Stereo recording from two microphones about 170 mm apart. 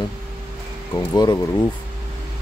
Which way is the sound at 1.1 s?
25° left (ahead or behind).